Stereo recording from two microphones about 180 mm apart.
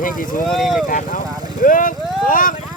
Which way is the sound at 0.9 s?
50° left (ahead or behind).